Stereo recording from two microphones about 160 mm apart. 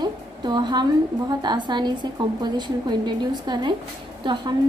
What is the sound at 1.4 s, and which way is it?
A woman's voice, 30° right (ahead or behind).